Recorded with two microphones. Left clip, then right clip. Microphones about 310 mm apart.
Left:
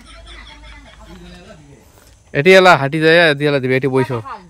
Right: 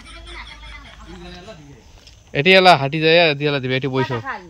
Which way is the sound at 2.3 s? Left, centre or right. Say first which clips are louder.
Left 3 dB; centre.